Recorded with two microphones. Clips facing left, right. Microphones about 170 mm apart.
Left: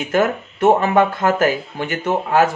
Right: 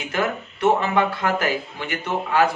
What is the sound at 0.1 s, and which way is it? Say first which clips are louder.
Speech: left 6 dB; 45° left (ahead or behind).